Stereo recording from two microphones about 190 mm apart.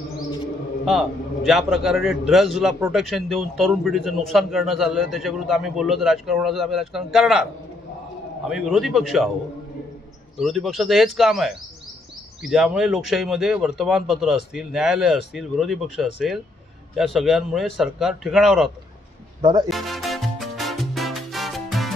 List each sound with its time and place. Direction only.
0.8 s a man's voice: centre (ahead or behind)
8.5 s a man's voice: centre (ahead or behind)
10.3 s a man's voice: centre (ahead or behind)
19.4 s speech: 20° right (ahead or behind)
19.7 s music: centre (ahead or behind)